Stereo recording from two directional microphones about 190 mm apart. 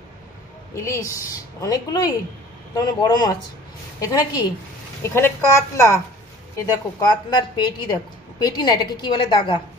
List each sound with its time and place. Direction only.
0.7 s a woman's voice: 15° left (ahead or behind)
7.0 s a woman's voice: 20° left (ahead or behind)